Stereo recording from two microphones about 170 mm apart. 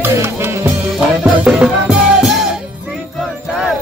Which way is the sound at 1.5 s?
5° right (ahead or behind).